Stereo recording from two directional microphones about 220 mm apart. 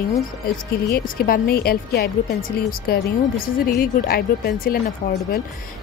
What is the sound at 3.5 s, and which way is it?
Speech, 40° left (ahead or behind).